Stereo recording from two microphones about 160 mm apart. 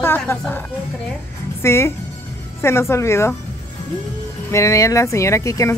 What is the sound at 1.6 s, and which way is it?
Speech, 15° left (ahead or behind).